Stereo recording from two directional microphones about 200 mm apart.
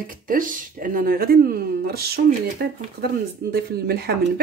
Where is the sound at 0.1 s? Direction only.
40° right (ahead or behind).